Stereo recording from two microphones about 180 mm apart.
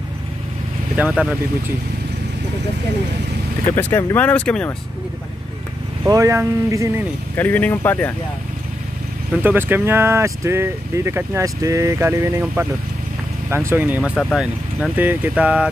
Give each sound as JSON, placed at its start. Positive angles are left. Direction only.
{"t": 0.9, "sound": "speech", "side_deg": -5}
{"t": 3.7, "sound": "speech", "side_deg": 15}
{"t": 6.0, "sound": "speech", "side_deg": -15}
{"t": 7.3, "sound": "speech", "side_deg": 10}
{"t": 9.4, "sound": "speech", "side_deg": -10}